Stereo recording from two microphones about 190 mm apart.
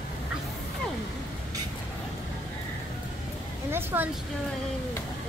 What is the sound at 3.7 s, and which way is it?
Speech, 10° right (ahead or behind).